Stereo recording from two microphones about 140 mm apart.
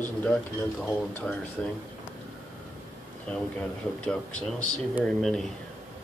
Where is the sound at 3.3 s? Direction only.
5° left (ahead or behind).